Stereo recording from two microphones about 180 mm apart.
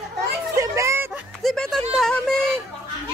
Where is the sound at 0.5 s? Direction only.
15° right (ahead or behind).